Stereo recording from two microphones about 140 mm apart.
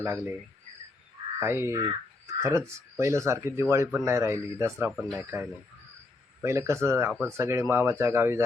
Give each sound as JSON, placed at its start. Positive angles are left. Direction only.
{"t": 0.0, "sound": "speech", "side_deg": -15}
{"t": 1.4, "sound": "speech", "side_deg": -20}
{"t": 4.9, "sound": "speech", "side_deg": -5}
{"t": 5.2, "sound": "speech", "side_deg": -15}